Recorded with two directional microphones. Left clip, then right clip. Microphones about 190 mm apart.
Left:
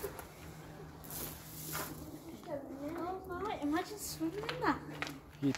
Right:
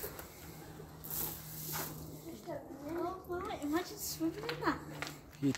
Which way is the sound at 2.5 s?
50° left (ahead or behind).